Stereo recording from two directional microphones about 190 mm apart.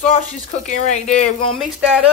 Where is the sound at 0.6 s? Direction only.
40° left (ahead or behind).